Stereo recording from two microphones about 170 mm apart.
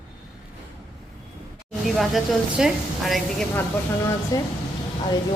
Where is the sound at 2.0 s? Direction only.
Centre (ahead or behind).